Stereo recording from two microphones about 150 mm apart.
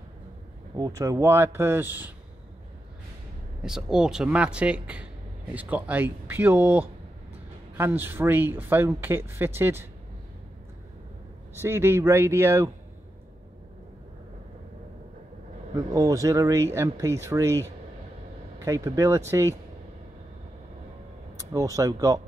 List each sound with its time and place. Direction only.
0.7 s speech: 25° right (ahead or behind)
3.6 s speech: 5° right (ahead or behind)
11.6 s speech: 15° right (ahead or behind)
15.7 s speech: 20° right (ahead or behind)
21.5 s speech: 20° right (ahead or behind)